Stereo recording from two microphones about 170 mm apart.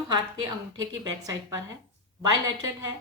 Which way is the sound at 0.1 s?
25° right (ahead or behind).